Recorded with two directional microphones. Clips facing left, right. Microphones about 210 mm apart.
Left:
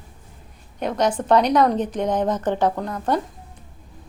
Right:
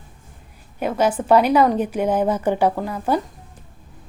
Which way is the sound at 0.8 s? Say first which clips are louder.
Right 2 dB; 5° right (ahead or behind).